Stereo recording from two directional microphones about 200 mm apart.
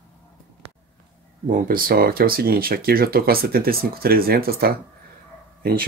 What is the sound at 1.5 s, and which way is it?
Speech, 45° right (ahead or behind).